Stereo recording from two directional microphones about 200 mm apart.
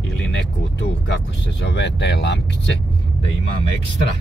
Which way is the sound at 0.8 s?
65° left (ahead or behind).